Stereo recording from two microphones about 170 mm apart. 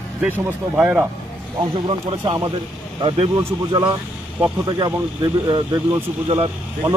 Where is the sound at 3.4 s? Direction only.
25° right (ahead or behind).